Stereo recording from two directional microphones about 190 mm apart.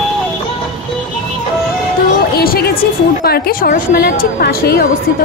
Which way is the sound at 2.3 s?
50° left (ahead or behind).